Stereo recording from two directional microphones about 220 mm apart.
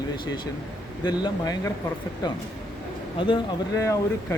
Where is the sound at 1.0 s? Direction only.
20° left (ahead or behind).